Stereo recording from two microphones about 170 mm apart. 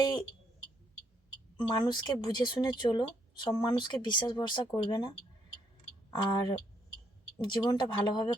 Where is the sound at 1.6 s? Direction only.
25° left (ahead or behind).